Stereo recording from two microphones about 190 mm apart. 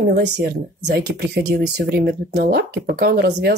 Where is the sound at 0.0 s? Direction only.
55° right (ahead or behind).